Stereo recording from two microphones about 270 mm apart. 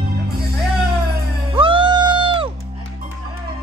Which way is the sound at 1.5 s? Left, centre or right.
Centre.